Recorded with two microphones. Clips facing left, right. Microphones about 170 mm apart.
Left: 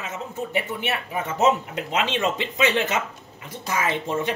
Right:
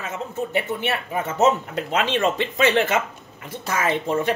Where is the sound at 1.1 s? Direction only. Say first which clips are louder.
Right 1 dB; 40° right (ahead or behind).